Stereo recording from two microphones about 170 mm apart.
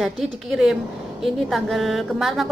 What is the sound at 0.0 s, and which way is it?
A woman's voice, centre (ahead or behind).